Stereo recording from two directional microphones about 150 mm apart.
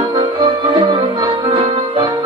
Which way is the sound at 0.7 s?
30° right (ahead or behind).